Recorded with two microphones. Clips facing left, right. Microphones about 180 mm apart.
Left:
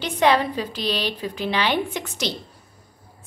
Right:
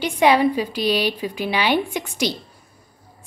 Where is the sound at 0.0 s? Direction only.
10° right (ahead or behind).